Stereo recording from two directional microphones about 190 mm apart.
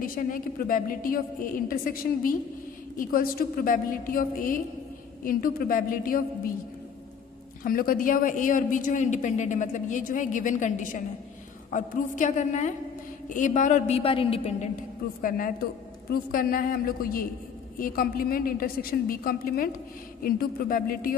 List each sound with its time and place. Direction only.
0.0 s a man's voice: 45° left (ahead or behind)
7.6 s a man's voice: 50° left (ahead or behind); by 14.7 s 30° left (ahead or behind)
15.2 s a man's voice: 45° left (ahead or behind)